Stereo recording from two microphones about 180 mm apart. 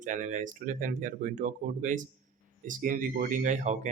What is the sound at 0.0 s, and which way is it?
Speech, 45° right (ahead or behind).